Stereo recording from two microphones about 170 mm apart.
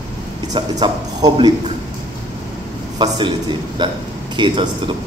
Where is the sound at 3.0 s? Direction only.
25° right (ahead or behind).